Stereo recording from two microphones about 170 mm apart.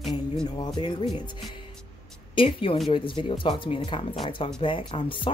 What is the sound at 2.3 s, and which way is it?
Speech, 30° left (ahead or behind).